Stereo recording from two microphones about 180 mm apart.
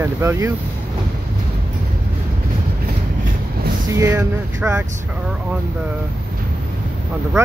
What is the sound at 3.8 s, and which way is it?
Speech, 15° right (ahead or behind).